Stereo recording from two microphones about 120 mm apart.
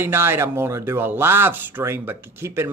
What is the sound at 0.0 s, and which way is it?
Speech, 20° right (ahead or behind).